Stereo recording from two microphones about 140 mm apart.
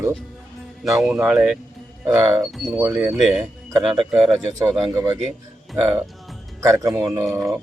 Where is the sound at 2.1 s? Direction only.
20° right (ahead or behind).